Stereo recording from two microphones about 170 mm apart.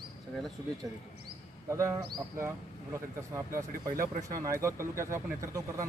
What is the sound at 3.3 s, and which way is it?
Speech, 20° right (ahead or behind).